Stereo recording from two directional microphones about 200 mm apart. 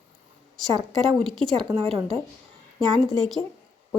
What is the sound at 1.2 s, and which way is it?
Speech, centre (ahead or behind).